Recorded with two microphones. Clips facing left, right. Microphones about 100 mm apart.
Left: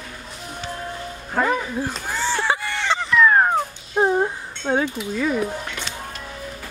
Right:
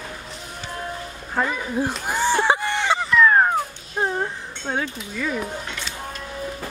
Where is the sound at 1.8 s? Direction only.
15° right (ahead or behind).